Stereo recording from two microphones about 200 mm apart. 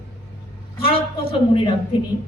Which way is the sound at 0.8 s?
25° left (ahead or behind).